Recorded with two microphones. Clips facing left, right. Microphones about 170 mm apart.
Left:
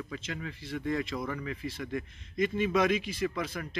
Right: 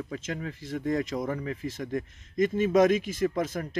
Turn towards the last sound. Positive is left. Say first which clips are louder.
# right 6 dB
turn(degrees=-45)  # may be behind; listen again after turning